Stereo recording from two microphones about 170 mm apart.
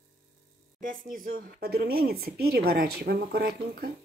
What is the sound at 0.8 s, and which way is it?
A woman's voice, 55° right (ahead or behind).